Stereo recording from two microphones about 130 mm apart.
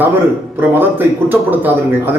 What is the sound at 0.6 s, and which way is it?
A man's voice, 15° right (ahead or behind).